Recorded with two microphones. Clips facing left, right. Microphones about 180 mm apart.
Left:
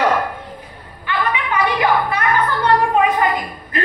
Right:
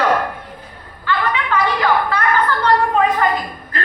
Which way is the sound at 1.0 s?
15° left (ahead or behind).